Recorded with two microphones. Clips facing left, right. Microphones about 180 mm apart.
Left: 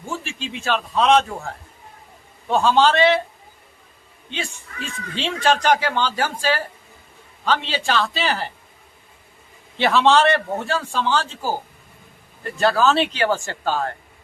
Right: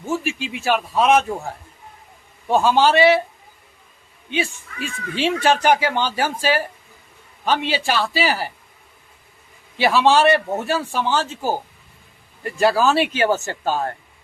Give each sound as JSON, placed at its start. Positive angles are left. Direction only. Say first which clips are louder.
{"t": 0.3, "sound": "speech", "louder": "even", "side_deg": -15}
{"t": 4.3, "sound": "speech", "louder": "right 6 dB", "side_deg": -15}
{"t": 8.2, "sound": "a man's voice", "louder": "right 2 dB", "side_deg": -5}
{"t": 9.7, "sound": "speech", "louder": "even", "side_deg": -5}
{"t": 12.4, "sound": "speech", "louder": "right 1 dB", "side_deg": -5}